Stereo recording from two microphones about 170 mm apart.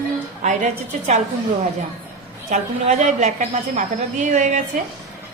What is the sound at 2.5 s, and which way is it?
A woman's voice, 40° right (ahead or behind).